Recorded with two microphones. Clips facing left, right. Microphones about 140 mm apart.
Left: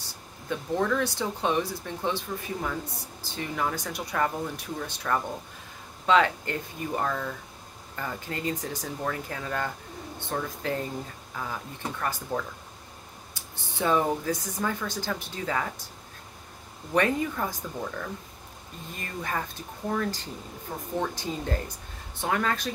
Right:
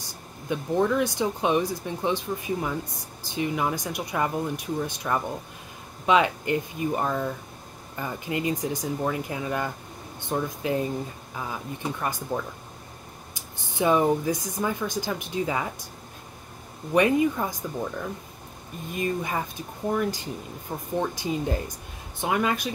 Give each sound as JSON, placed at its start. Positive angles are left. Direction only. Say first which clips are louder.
{"t": 0.0, "sound": "speech", "louder": "right 3 dB", "side_deg": -15}
{"t": 13.3, "sound": "speech", "louder": "right 2 dB", "side_deg": -15}
{"t": 16.9, "sound": "speech", "louder": "right 5 dB", "side_deg": -15}